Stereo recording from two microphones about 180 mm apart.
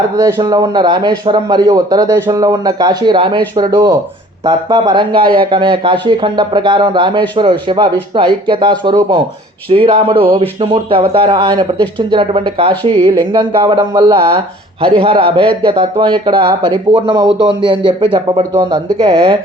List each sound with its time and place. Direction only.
0.2 s speech: 20° right (ahead or behind)